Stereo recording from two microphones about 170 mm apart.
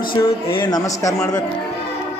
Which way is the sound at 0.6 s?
20° left (ahead or behind).